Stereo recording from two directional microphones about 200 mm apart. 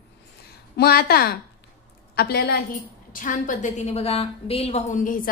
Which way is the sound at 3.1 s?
40° left (ahead or behind).